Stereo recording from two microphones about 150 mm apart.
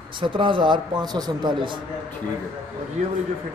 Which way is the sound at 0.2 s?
35° right (ahead or behind).